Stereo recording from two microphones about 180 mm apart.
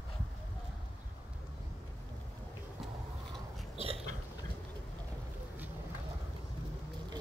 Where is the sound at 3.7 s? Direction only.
35° right (ahead or behind).